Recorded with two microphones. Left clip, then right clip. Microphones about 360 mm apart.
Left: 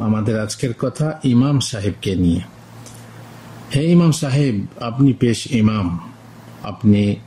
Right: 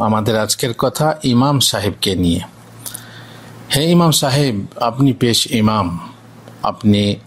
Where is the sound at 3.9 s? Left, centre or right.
Centre.